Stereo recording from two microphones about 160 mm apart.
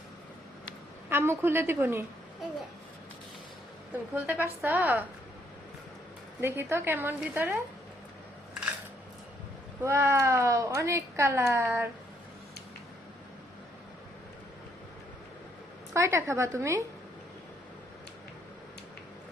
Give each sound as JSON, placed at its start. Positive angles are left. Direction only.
{"t": 1.1, "sound": "a woman's voice", "side_deg": -15}
{"t": 4.1, "sound": "a woman's voice", "side_deg": -15}
{"t": 6.4, "sound": "a woman's voice", "side_deg": -15}
{"t": 9.8, "sound": "a woman's voice", "side_deg": -15}
{"t": 15.9, "sound": "a woman's voice", "side_deg": -15}